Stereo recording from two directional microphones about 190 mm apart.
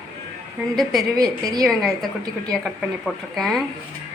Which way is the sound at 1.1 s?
20° right (ahead or behind).